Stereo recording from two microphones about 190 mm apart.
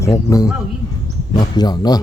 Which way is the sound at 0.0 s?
15° left (ahead or behind).